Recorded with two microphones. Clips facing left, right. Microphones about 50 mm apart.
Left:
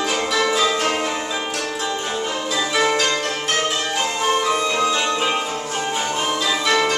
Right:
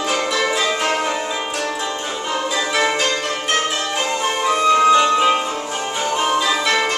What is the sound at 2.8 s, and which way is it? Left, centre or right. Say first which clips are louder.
Music: left 1 dB; centre.